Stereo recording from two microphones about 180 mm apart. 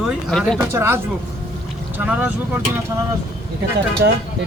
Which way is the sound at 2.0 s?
10° right (ahead or behind).